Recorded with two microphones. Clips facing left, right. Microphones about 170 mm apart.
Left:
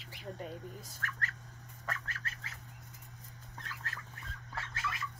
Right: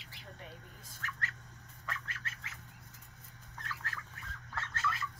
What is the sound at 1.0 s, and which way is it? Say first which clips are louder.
Speech: left 1 dB; 50° left (ahead or behind).